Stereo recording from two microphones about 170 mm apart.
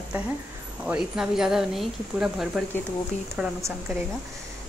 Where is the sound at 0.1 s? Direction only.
10° right (ahead or behind).